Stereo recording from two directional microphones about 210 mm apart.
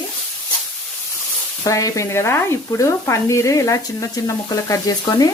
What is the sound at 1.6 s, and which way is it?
Speech, 15° left (ahead or behind).